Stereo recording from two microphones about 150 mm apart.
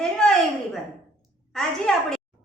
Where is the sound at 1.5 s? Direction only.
5° left (ahead or behind).